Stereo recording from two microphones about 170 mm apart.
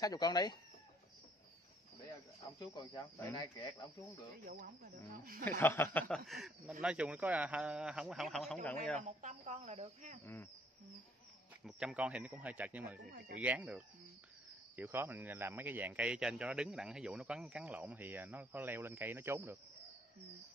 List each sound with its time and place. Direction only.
0.0 s speech: 20° left (ahead or behind)
2.6 s speech: 25° left (ahead or behind)
4.5 s speech: 55° right (ahead or behind)
5.4 s speech: 15° left (ahead or behind)
5.9 s speech: centre (ahead or behind)
9.0 s a woman's voice: 50° right (ahead or behind)
10.2 s speech: 15° left (ahead or behind)
11.6 s speech: 5° right (ahead or behind)